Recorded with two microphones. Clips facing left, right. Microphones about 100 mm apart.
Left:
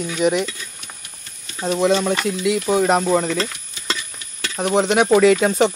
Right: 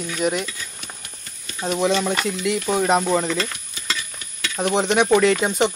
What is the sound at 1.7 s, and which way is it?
Speech, centre (ahead or behind).